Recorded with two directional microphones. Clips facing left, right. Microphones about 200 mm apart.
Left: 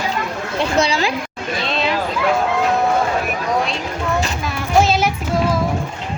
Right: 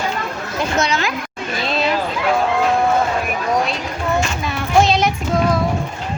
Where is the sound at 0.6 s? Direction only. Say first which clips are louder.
Left 2 dB; 30° left (ahead or behind).